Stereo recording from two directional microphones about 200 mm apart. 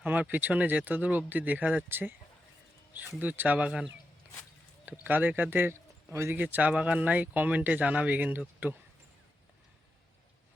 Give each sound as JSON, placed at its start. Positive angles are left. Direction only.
{"t": 0.0, "sound": "speech", "side_deg": -10}
{"t": 3.2, "sound": "speech", "side_deg": -10}
{"t": 5.0, "sound": "speech", "side_deg": -10}